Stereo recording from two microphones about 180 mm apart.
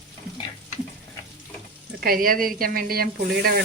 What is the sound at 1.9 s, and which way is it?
Speech, 55° right (ahead or behind).